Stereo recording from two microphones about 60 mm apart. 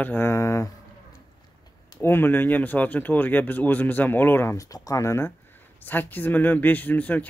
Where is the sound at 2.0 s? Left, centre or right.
Left.